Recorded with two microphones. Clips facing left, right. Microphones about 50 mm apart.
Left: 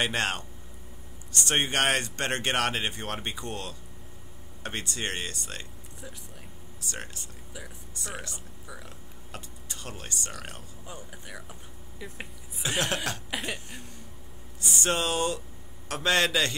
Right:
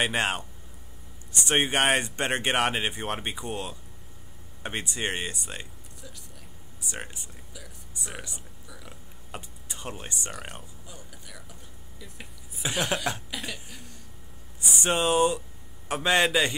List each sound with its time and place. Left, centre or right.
0.0 s a man's voice: centre
6.8 s a man's voice: centre
10.9 s speech: left
12.6 s a man's voice: centre
13.3 s speech: left
14.6 s a man's voice: centre